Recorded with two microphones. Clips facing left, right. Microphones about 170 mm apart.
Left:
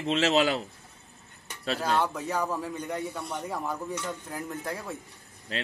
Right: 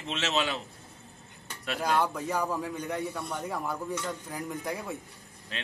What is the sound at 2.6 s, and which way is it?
Speech, 10° right (ahead or behind).